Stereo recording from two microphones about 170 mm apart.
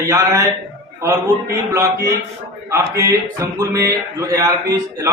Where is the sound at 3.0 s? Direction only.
20° right (ahead or behind).